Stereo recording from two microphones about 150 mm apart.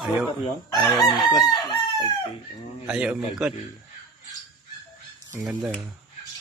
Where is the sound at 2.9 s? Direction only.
5° right (ahead or behind).